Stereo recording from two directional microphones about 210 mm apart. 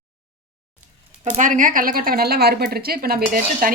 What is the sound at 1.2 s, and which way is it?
A woman's voice, 35° right (ahead or behind).